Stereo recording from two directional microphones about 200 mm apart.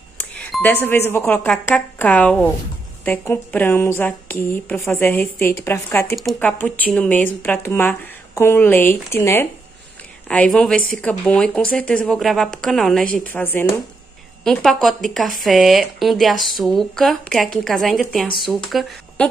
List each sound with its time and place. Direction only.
0.2 s music: 5° left (ahead or behind)
1.1 s speech: 10° left (ahead or behind)